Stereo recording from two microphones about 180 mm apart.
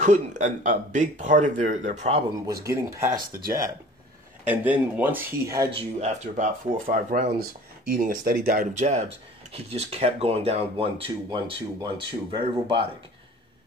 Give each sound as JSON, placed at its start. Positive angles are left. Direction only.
{"t": 0.0, "sound": "speech", "side_deg": -40}
{"t": 2.4, "sound": "speech", "side_deg": -20}
{"t": 3.1, "sound": "speech", "side_deg": -50}
{"t": 4.5, "sound": "speech", "side_deg": -10}
{"t": 5.7, "sound": "speech", "side_deg": -35}
{"t": 8.7, "sound": "speech", "side_deg": -40}